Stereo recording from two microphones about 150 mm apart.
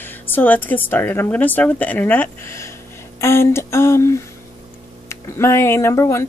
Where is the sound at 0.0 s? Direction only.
15° left (ahead or behind).